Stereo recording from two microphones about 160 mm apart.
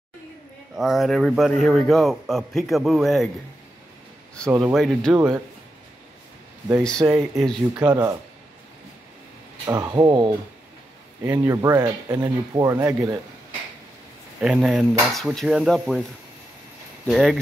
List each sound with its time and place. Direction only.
0.7 s a man's voice: centre (ahead or behind)
4.7 s a man's voice: centre (ahead or behind)
5.1 s speech: 25° right (ahead or behind)
6.8 s a man's voice: 5° left (ahead or behind)
7.9 s speech: 20° right (ahead or behind)
9.7 s speech: 20° right (ahead or behind)
11.3 s speech: 20° right (ahead or behind)
14.4 s a man's voice: 5° right (ahead or behind)
17.1 s a man's voice: centre (ahead or behind)